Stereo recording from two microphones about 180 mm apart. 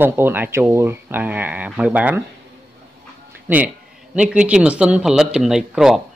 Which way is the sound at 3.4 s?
10° right (ahead or behind).